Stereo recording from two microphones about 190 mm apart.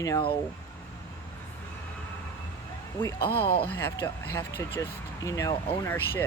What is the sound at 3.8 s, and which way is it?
Speech, 10° left (ahead or behind).